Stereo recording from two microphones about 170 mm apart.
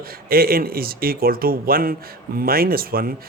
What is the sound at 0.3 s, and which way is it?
Speech, 60° right (ahead or behind).